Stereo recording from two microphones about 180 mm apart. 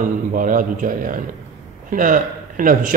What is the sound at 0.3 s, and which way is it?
A man's voice, 45° right (ahead or behind).